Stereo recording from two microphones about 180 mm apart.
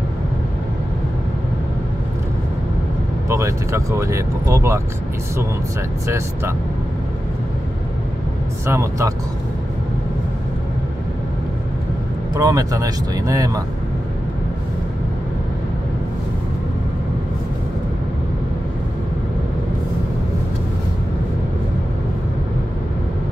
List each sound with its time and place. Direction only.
3.3 s speech: 15° right (ahead or behind)
6.0 s speech: 15° right (ahead or behind)
8.6 s speech: 15° right (ahead or behind)
12.4 s speech: 20° right (ahead or behind)